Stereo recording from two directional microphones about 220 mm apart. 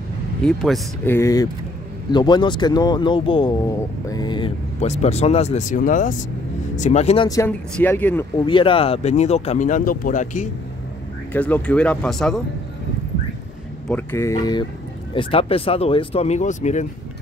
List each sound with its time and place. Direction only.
0.5 s speech: centre (ahead or behind)
1.1 s speech: 15° left (ahead or behind)
7.2 s speech: 15° left (ahead or behind)
8.4 s speech: 20° left (ahead or behind)
11.3 s speech: 5° left (ahead or behind)
13.8 s speech: 10° left (ahead or behind); by 16.8 s 35° left (ahead or behind)